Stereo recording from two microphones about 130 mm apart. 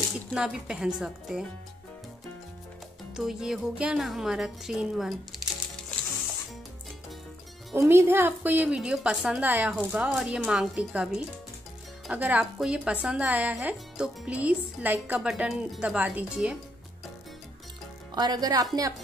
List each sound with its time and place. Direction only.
0.3 s a woman's voice: 5° right (ahead or behind)
3.2 s a woman's voice: 5° right (ahead or behind)
7.7 s a woman's voice: 20° right (ahead or behind)
15.2 s a woman's voice: centre (ahead or behind)
18.1 s a woman's voice: 30° right (ahead or behind)